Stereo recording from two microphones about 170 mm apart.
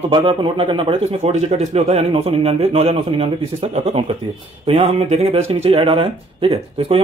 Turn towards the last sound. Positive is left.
turn(degrees=-35)  # may be behind; listen again after turning